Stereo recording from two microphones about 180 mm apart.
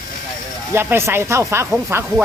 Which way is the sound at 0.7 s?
15° right (ahead or behind).